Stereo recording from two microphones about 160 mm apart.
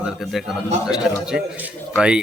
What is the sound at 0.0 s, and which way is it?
Speech, centre (ahead or behind).